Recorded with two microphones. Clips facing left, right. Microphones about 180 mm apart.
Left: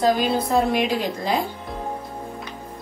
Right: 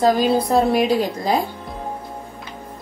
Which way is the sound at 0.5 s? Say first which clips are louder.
Right 4 dB; 35° right (ahead or behind).